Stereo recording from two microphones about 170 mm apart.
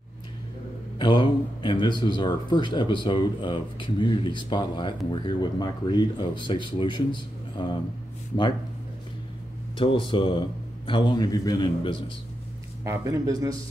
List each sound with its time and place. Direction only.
0.9 s speech: 25° left (ahead or behind)
9.8 s speech: 30° left (ahead or behind)
12.8 s speech: 15° right (ahead or behind)